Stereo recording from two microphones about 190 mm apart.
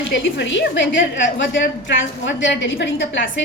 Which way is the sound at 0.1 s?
70° left (ahead or behind).